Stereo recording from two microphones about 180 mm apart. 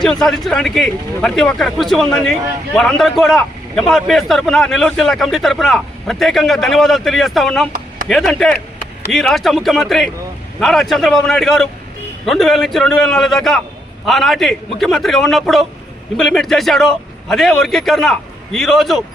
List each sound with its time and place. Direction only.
0.0 s speech: centre (ahead or behind)